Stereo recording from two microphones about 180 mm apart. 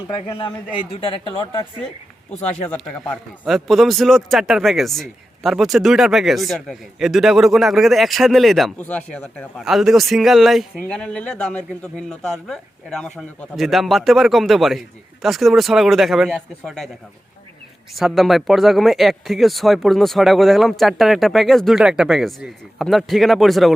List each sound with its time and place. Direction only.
0.2 s a man's voice: 30° left (ahead or behind)
2.3 s a man's voice: 5° left (ahead or behind)
17.9 s a man's voice: centre (ahead or behind)